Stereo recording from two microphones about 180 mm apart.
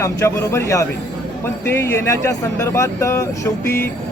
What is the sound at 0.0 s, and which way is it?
Speech, 15° left (ahead or behind).